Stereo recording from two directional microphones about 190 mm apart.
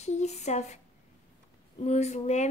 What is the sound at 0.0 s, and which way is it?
Speech, 35° left (ahead or behind).